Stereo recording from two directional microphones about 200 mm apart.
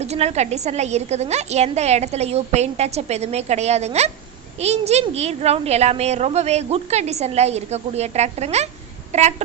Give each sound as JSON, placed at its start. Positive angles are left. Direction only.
{"t": 0.0, "sound": "a woman's voice", "side_deg": -35}